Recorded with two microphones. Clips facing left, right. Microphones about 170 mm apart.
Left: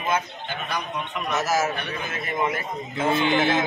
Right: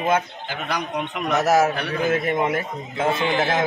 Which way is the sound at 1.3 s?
65° right (ahead or behind).